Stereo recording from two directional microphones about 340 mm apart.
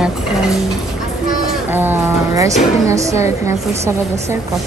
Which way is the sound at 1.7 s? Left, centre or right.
Centre.